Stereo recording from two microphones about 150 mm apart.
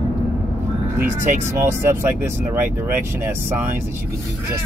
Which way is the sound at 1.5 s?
15° right (ahead or behind).